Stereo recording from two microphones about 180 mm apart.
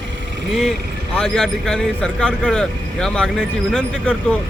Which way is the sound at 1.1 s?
5° left (ahead or behind).